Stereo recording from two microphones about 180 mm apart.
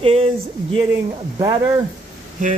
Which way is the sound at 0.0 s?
30° right (ahead or behind).